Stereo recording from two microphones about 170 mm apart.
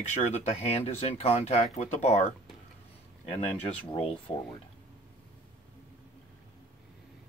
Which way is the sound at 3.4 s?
40° left (ahead or behind).